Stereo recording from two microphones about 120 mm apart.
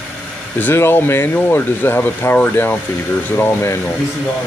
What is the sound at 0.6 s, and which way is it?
Speech, 15° left (ahead or behind).